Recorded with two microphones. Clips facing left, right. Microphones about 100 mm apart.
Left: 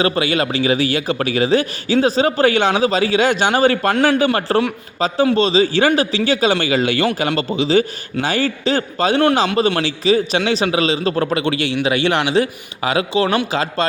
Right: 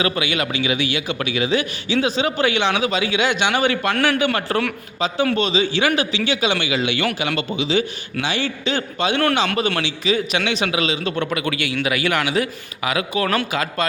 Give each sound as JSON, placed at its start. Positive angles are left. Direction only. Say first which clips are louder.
{"t": 0.0, "sound": "a man's voice", "louder": "left 4 dB", "side_deg": 35}